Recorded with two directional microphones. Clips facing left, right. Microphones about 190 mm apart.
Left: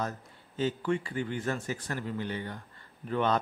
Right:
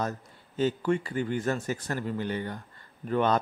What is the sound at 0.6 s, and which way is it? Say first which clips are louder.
Speech: right 3 dB; 45° right (ahead or behind).